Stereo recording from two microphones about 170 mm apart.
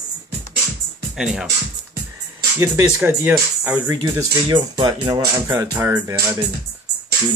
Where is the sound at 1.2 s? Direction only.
5° right (ahead or behind).